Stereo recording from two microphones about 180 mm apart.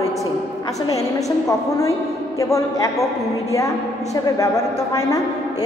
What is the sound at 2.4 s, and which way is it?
A woman's voice, 15° left (ahead or behind).